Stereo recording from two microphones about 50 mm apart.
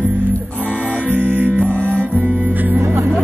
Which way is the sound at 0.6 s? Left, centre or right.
Right.